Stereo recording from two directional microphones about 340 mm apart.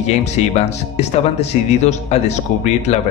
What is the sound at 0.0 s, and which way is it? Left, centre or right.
Speech, centre.